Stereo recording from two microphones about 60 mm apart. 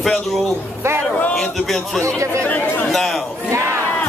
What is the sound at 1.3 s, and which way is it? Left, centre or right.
Speech, centre.